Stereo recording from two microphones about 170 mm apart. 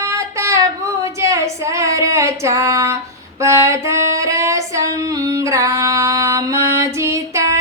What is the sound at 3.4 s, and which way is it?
Female singing, 15° right (ahead or behind).